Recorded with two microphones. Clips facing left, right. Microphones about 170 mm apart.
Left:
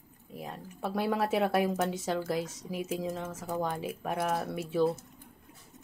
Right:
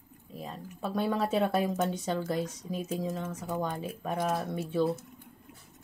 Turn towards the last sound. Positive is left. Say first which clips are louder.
# even
turn(degrees=5)  # may be behind; listen again after turning